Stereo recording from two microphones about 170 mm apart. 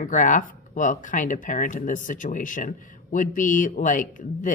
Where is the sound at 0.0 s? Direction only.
50° left (ahead or behind).